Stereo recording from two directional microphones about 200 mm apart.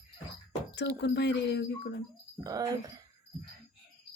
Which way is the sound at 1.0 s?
60° left (ahead or behind).